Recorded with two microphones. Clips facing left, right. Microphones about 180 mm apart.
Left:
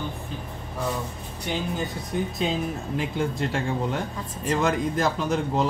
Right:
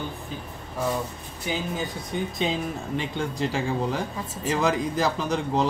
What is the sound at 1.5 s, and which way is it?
Speech, centre (ahead or behind).